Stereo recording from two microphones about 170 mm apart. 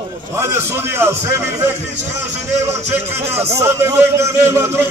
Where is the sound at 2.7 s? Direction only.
15° right (ahead or behind).